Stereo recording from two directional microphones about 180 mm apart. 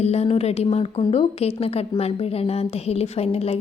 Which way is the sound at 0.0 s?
35° left (ahead or behind).